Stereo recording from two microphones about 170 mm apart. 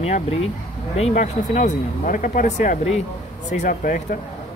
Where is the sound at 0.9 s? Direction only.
40° left (ahead or behind).